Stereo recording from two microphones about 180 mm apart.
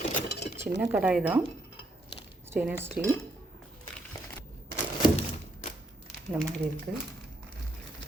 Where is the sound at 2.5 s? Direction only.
10° right (ahead or behind).